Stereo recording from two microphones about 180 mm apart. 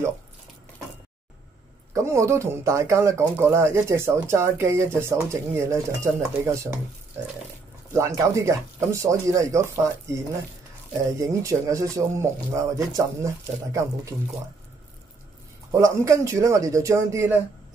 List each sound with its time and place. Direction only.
2.0 s speech: 15° right (ahead or behind)
7.9 s speech: 15° right (ahead or behind)
15.7 s speech: 15° right (ahead or behind)